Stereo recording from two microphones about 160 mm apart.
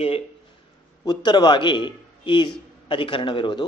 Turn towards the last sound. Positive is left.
turn(degrees=30)  # may be behind; listen again after turning